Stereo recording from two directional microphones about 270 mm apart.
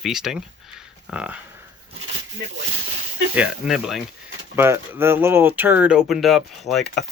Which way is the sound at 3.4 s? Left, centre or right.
Centre.